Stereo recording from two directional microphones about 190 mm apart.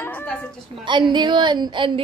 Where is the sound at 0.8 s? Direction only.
25° right (ahead or behind).